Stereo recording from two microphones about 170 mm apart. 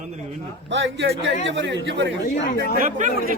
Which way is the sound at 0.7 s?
90° right.